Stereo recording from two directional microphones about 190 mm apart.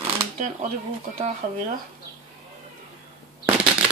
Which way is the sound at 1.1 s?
35° right (ahead or behind).